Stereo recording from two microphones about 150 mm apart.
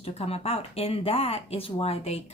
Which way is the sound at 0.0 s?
40° left (ahead or behind).